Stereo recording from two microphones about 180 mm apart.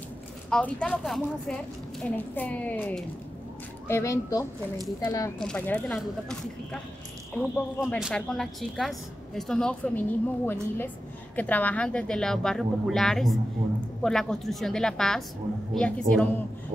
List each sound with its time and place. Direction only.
0.5 s a woman's voice: 5° left (ahead or behind)
5.4 s a woman's voice: 5° left (ahead or behind)
7.8 s a woman's voice: centre (ahead or behind)